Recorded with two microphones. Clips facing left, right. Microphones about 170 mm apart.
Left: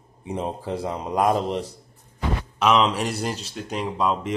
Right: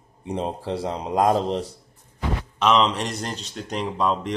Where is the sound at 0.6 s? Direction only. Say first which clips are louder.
Right 1 dB; 75° right (ahead or behind).